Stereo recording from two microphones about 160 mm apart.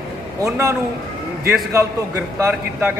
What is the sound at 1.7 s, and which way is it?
A man's voice, 15° right (ahead or behind).